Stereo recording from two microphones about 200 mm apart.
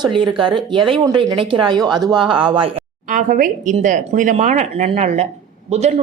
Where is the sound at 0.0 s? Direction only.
25° right (ahead or behind).